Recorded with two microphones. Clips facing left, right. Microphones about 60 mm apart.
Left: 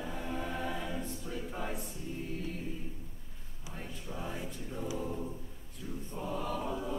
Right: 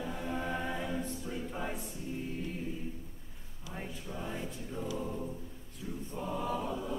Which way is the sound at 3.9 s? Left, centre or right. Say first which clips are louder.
Left 1 dB; centre.